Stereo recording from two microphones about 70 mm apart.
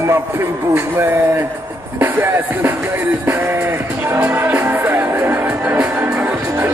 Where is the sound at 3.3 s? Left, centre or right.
Right.